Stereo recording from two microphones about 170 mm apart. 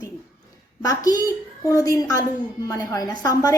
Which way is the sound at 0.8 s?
20° left (ahead or behind).